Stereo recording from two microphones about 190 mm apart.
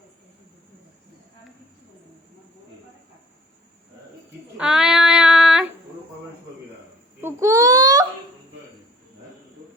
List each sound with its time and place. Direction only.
4.5 s child singing: 5° right (ahead or behind)
7.2 s baby cry: 15° right (ahead or behind)